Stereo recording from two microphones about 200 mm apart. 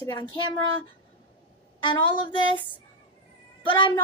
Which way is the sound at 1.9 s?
25° left (ahead or behind).